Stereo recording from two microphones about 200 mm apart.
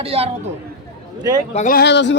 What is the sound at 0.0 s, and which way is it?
Speech, 30° right (ahead or behind).